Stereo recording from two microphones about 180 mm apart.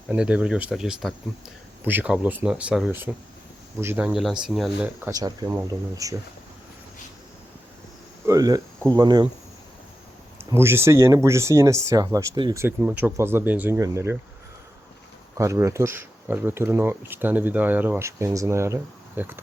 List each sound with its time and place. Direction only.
0.1 s speech: 5° right (ahead or behind)
4.9 s speech: 15° right (ahead or behind)
8.3 s cricket: 20° right (ahead or behind)
9.0 s speech: 20° right (ahead or behind)
10.5 s speech: 15° right (ahead or behind)
15.4 s speech: 15° right (ahead or behind)